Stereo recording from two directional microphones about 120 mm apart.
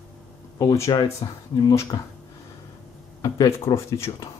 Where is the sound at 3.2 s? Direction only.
30° left (ahead or behind).